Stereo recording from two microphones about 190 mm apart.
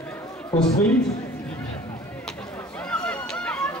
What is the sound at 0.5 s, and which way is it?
Speech, 20° left (ahead or behind).